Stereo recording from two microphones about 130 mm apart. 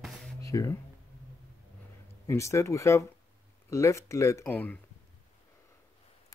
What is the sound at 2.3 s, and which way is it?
Speech, 25° left (ahead or behind).